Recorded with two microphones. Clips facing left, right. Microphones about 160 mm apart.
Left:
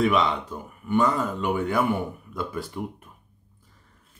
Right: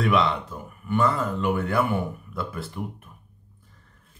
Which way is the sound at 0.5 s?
15° left (ahead or behind).